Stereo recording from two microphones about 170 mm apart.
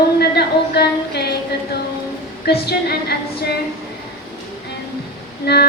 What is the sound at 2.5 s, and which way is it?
Child singing, 70° left (ahead or behind).